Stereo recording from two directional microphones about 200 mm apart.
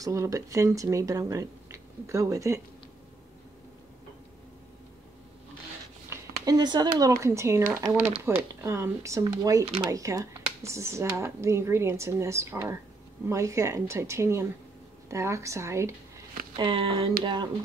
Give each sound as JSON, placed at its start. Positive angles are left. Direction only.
{"t": 0.0, "sound": "speech", "side_deg": -15}
{"t": 6.4, "sound": "speech", "side_deg": -20}
{"t": 16.5, "sound": "speech", "side_deg": -25}